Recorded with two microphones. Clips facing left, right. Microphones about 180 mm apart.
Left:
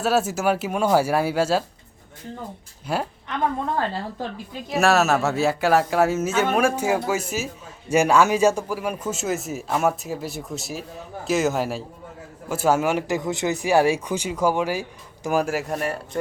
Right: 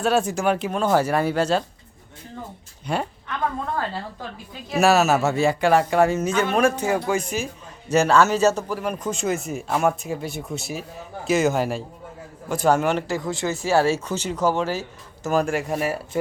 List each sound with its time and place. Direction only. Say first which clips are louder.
0.0 s speech: even; 5° left (ahead or behind)
2.8 s speech: even; 5° left (ahead or behind)
4.7 s speech: right 1 dB; centre (ahead or behind)